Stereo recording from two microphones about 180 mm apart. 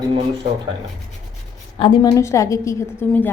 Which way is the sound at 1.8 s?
20° left (ahead or behind).